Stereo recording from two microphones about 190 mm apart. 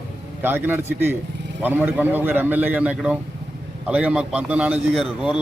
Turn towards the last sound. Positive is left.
turn(degrees=-5)  # may be behind; listen again after turning